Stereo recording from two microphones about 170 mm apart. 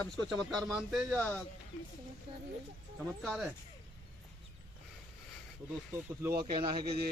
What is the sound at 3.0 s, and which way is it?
Speech, centre (ahead or behind).